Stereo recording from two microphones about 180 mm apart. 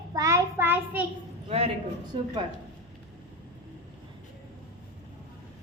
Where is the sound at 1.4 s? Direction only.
35° right (ahead or behind).